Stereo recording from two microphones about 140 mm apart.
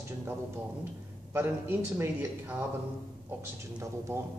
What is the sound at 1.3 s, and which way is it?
A man's voice, 15° right (ahead or behind).